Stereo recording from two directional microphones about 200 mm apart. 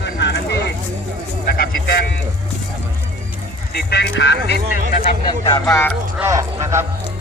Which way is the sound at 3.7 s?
55° left (ahead or behind).